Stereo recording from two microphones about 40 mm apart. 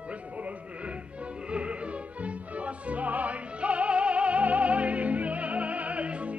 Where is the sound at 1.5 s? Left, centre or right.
Right.